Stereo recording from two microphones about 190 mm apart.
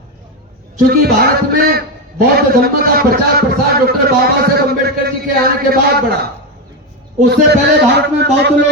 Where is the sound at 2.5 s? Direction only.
50° right (ahead or behind).